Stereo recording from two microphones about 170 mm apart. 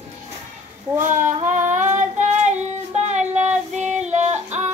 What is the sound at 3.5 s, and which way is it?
Child singing, 45° right (ahead or behind).